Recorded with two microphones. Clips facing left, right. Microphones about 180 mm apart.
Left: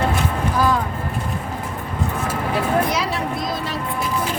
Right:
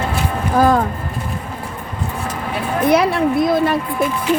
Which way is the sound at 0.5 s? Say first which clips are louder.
Right 7 dB; 50° right (ahead or behind).